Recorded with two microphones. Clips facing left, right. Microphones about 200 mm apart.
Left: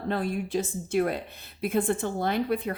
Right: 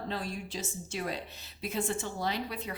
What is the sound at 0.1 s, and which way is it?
A woman's voice, 55° left (ahead or behind).